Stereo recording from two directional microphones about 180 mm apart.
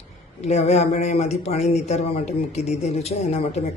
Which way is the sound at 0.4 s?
40° left (ahead or behind).